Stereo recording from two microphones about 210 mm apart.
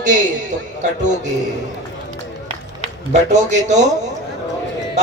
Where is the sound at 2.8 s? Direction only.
35° right (ahead or behind).